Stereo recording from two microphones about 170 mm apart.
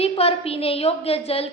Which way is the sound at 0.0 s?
35° left (ahead or behind).